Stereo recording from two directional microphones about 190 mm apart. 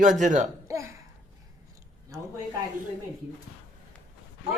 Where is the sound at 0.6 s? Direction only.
15° right (ahead or behind).